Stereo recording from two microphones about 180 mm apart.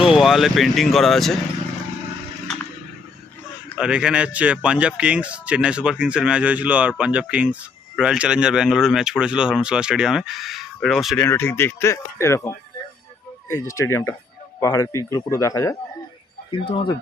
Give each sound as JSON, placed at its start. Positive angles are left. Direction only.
{"t": 0.0, "sound": "speech", "side_deg": 0}
{"t": 3.8, "sound": "speech", "side_deg": -5}
{"t": 11.3, "sound": "speech", "side_deg": 15}
{"t": 16.5, "sound": "speech", "side_deg": 30}